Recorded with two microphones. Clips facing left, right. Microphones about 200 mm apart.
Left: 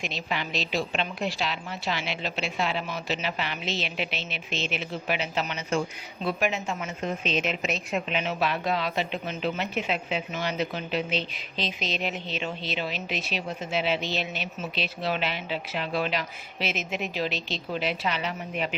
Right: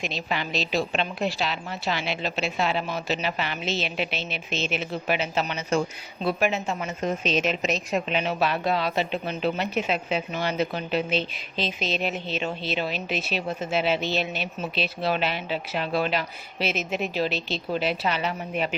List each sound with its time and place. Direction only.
0.0 s a woman's voice: 35° right (ahead or behind)